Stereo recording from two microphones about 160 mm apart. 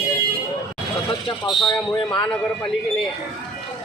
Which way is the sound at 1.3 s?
30° left (ahead or behind).